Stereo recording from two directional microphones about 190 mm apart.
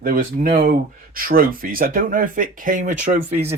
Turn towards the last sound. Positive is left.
turn(degrees=-40)  # may be behind; listen again after turning